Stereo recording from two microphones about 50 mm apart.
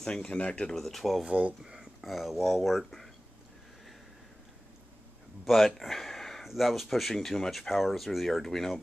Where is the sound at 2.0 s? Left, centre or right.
Centre.